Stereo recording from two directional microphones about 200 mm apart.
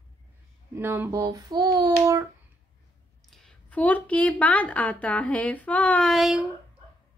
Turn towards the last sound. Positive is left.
turn(degrees=0)  # may be behind; listen again after turning